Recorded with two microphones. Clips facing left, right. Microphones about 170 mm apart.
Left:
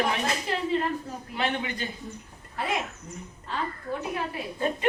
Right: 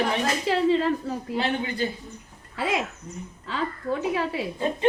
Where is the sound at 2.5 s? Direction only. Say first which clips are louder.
Right 3 dB; 90° right.